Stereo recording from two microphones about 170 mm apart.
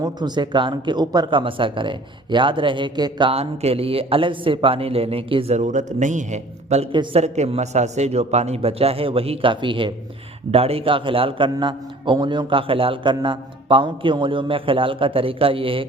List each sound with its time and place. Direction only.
0.0 s speech: 25° right (ahead or behind); by 6.8 s 40° right (ahead or behind)
6.9 s speech: 30° right (ahead or behind)